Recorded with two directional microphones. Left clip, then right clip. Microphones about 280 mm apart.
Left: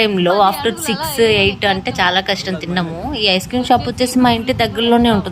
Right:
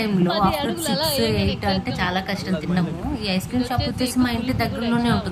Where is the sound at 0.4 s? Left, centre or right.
Centre.